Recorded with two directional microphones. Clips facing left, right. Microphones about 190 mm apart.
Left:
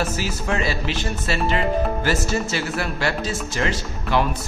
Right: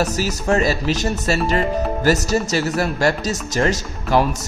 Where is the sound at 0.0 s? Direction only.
40° right (ahead or behind).